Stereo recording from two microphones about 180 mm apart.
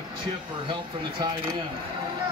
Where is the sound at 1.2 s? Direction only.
25° right (ahead or behind).